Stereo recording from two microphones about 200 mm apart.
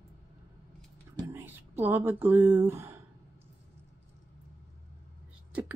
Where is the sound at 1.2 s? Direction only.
10° right (ahead or behind).